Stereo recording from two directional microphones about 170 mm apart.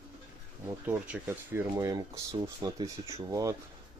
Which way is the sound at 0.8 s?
10° right (ahead or behind).